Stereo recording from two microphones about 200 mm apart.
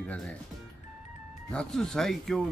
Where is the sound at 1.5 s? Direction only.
5° left (ahead or behind).